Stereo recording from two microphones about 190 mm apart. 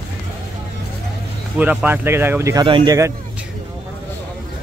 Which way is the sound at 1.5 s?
10° right (ahead or behind).